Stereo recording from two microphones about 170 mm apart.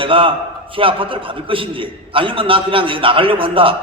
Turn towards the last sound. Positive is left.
turn(degrees=-30)  # may be behind; listen again after turning